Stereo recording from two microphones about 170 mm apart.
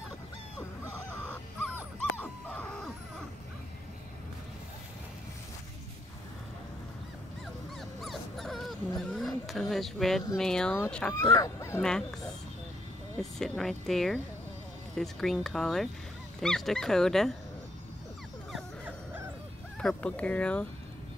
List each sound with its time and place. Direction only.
2.1 s dog: 10° left (ahead or behind)
8.0 s dog: centre (ahead or behind)
10.3 s speech: 5° left (ahead or behind)
11.3 s speech: 15° left (ahead or behind)
11.8 s speech: 5° left (ahead or behind)
18.5 s dog: 10° right (ahead or behind)
19.8 s speech: 5° left (ahead or behind)